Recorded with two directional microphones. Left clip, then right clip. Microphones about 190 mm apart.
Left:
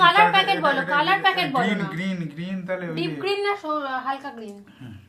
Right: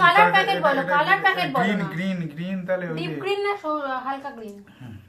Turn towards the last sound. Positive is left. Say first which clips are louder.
# even
turn(degrees=0)  # may be behind; listen again after turning